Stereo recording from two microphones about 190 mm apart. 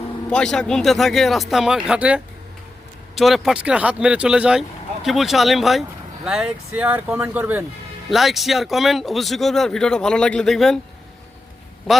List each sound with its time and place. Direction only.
0.3 s speech: 5° left (ahead or behind)